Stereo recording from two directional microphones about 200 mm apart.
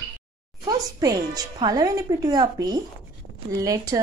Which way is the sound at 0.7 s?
20° right (ahead or behind).